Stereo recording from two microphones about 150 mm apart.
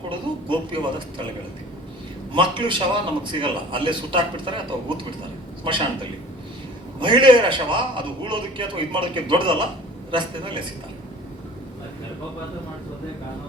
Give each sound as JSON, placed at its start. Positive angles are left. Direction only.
{"t": 0.4, "sound": "a man's voice", "side_deg": -30}
{"t": 2.3, "sound": "a man's voice", "side_deg": -35}
{"t": 5.6, "sound": "a man's voice", "side_deg": -35}